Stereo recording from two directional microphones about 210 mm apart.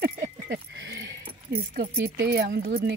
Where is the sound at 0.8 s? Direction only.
55° right (ahead or behind).